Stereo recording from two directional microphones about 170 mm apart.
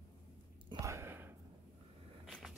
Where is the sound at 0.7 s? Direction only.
20° right (ahead or behind).